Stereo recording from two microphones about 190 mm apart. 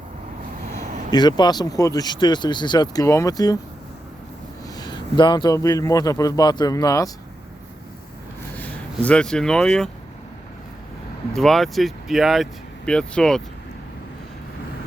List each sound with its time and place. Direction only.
1.1 s speech: 20° left (ahead or behind)
4.8 s speech: 25° left (ahead or behind)
8.5 s speech: 5° left (ahead or behind)
11.3 s speech: centre (ahead or behind)